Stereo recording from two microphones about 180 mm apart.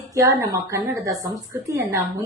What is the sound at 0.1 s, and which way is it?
Speech, 20° right (ahead or behind).